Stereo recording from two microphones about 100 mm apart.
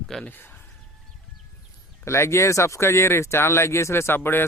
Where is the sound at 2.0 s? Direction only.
30° left (ahead or behind).